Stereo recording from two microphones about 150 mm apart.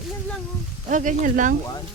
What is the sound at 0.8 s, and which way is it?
Speech, 60° right (ahead or behind).